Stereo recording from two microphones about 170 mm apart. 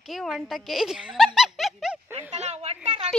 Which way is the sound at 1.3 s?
Centre (ahead or behind).